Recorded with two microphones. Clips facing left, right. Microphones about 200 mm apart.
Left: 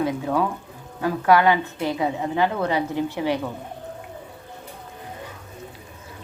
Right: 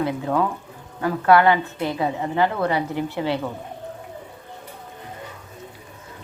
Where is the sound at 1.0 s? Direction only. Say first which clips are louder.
Right 1 dB; 15° left (ahead or behind).